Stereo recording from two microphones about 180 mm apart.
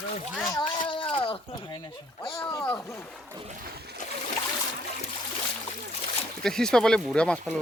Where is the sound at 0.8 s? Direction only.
30° left (ahead or behind).